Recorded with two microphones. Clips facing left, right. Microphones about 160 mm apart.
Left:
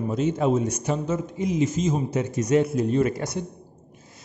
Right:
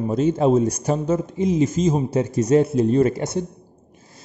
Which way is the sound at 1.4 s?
25° right (ahead or behind).